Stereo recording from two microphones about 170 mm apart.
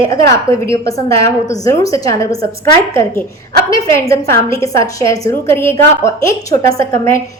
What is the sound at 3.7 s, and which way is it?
A woman's voice, 15° left (ahead or behind).